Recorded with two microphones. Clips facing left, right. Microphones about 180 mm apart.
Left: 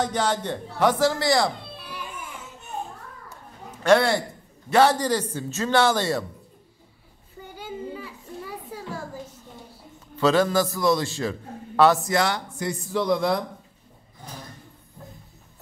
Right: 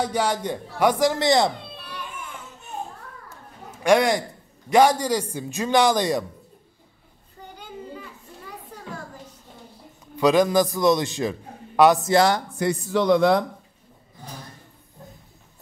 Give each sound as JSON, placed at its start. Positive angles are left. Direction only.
{"t": 0.0, "sound": "a man's voice", "side_deg": -10}
{"t": 3.7, "sound": "a man's voice", "side_deg": -15}
{"t": 7.5, "sound": "children playing", "side_deg": 5}
{"t": 10.1, "sound": "a man's voice", "side_deg": -15}
{"t": 12.1, "sound": "speech", "side_deg": -35}
{"t": 12.5, "sound": "speech", "side_deg": -75}